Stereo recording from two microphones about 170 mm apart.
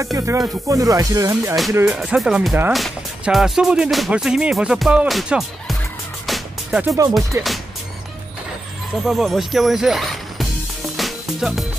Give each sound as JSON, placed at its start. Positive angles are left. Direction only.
{"t": 0.0, "sound": "music", "side_deg": -15}
{"t": 1.9, "sound": "speech", "side_deg": -5}
{"t": 6.2, "sound": "music", "side_deg": 0}
{"t": 7.0, "sound": "music", "side_deg": -20}
{"t": 9.0, "sound": "speech", "side_deg": 0}
{"t": 11.0, "sound": "music", "side_deg": 0}